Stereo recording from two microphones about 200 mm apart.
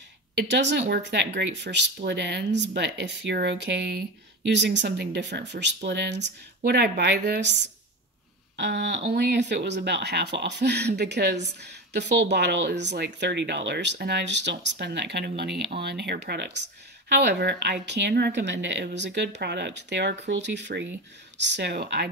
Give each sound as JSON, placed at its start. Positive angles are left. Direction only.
{"t": 0.4, "sound": "speech", "side_deg": -60}